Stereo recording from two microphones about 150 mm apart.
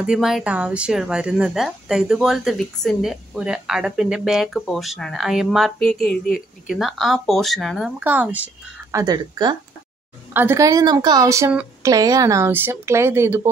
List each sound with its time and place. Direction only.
0.0 s speech: 5° right (ahead or behind)
8.0 s speech: 10° right (ahead or behind)
8.9 s a woman's voice: 25° right (ahead or behind)
10.3 s a woman's voice: 15° right (ahead or behind)